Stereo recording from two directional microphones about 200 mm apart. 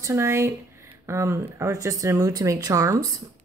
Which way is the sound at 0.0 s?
15° right (ahead or behind).